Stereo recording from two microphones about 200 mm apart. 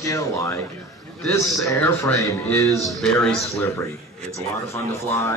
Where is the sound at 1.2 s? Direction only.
5° left (ahead or behind).